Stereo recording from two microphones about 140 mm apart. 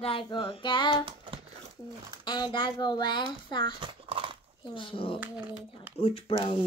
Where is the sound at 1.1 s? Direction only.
40° right (ahead or behind).